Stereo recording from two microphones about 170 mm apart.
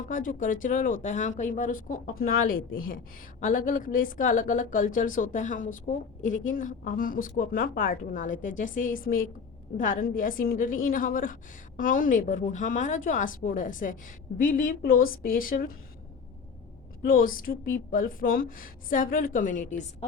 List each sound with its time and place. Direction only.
0.0 s a woman's voice: 50° left (ahead or behind)
17.0 s a woman's voice: 55° left (ahead or behind)